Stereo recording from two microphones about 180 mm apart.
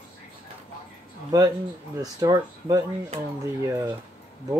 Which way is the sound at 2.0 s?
20° right (ahead or behind).